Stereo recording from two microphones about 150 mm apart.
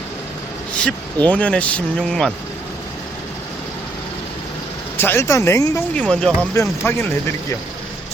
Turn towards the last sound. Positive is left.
turn(degrees=15)  # may be behind; listen again after turning